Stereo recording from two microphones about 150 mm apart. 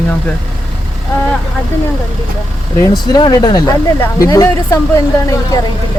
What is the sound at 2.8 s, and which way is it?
Speech, 25° left (ahead or behind).